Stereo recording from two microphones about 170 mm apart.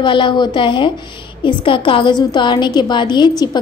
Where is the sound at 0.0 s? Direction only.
30° left (ahead or behind).